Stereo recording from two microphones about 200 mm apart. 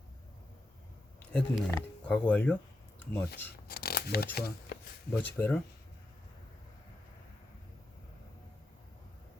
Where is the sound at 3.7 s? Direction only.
50° left (ahead or behind).